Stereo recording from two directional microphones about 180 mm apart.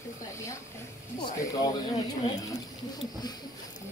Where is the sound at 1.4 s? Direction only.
20° left (ahead or behind).